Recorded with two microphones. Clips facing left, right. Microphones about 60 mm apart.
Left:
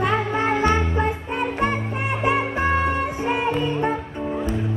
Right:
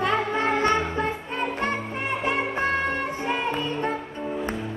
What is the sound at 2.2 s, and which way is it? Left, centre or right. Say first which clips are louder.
Music: left 4 dB; centre.